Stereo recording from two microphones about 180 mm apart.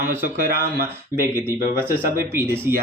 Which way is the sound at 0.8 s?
15° right (ahead or behind).